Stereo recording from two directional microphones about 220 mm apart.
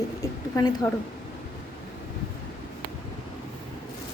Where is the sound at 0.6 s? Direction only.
20° left (ahead or behind).